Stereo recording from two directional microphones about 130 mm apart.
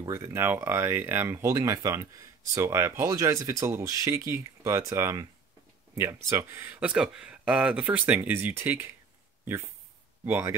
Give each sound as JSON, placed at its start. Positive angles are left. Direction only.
{"t": 0.0, "sound": "speech", "side_deg": -20}
{"t": 10.2, "sound": "speech", "side_deg": -15}